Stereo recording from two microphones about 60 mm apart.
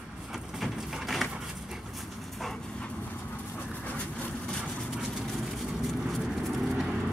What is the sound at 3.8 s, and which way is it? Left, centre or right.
Vehicle, left.